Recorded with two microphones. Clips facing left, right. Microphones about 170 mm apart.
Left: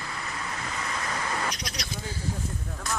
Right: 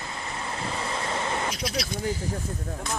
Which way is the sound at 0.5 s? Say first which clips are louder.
Right 5 dB; 30° right (ahead or behind).